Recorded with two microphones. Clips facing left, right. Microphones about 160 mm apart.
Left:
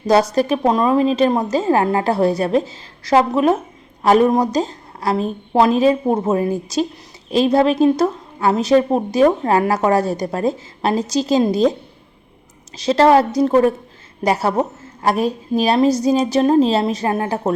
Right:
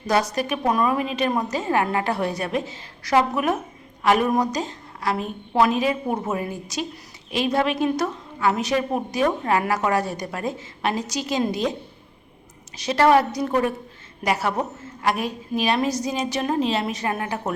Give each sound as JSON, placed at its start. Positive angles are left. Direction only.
{"t": 0.1, "sound": "a woman's voice", "side_deg": 30}
{"t": 12.7, "sound": "a woman's voice", "side_deg": 30}